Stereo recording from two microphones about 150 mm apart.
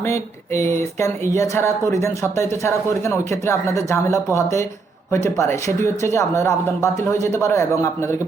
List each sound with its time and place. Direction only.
0.0 s speech: 20° left (ahead or behind)